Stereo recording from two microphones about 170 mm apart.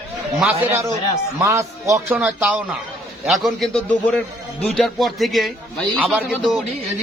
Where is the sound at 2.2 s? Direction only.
5° right (ahead or behind).